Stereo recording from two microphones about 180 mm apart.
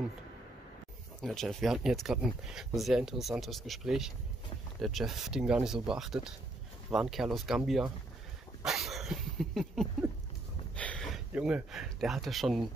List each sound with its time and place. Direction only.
1.2 s speech: centre (ahead or behind)
8.6 s dog: centre (ahead or behind)
10.8 s speech: 5° left (ahead or behind)